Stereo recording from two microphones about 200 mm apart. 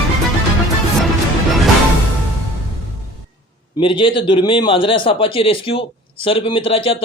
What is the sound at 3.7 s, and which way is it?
Speech, 25° left (ahead or behind).